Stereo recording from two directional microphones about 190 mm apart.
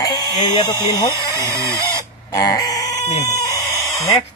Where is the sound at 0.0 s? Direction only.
20° left (ahead or behind).